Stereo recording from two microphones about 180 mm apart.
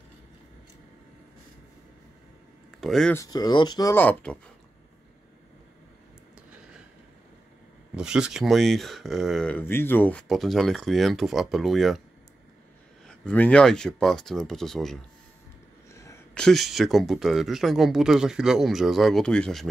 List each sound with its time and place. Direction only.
2.8 s speech: centre (ahead or behind)
3.2 s speech: 20° left (ahead or behind)
3.9 s speech: 10° left (ahead or behind)
7.9 s speech: 5° right (ahead or behind)
13.0 s speech: 5° left (ahead or behind)
15.9 s a sound: 15° left (ahead or behind)
16.3 s speech: centre (ahead or behind)